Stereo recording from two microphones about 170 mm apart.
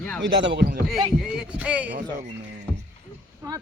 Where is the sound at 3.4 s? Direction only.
20° right (ahead or behind).